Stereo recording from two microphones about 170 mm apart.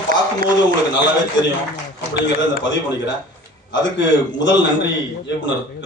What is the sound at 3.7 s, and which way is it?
A man's voice, 90° left.